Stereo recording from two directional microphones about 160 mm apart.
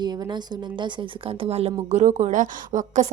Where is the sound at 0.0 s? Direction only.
25° right (ahead or behind).